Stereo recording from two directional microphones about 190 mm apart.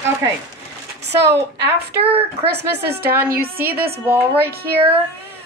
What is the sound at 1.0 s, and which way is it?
Speech, 65° right (ahead or behind).